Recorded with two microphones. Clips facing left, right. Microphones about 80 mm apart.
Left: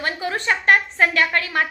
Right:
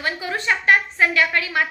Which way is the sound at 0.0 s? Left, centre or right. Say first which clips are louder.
Left 1 dB; left.